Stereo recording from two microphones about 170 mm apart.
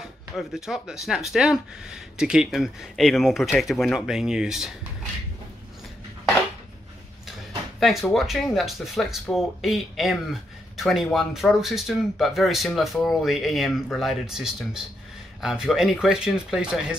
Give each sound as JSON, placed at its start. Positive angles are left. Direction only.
{"t": 0.0, "sound": "speech", "side_deg": 0}
{"t": 7.8, "sound": "speech", "side_deg": 0}